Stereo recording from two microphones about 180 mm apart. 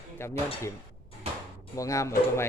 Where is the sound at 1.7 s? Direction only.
20° left (ahead or behind).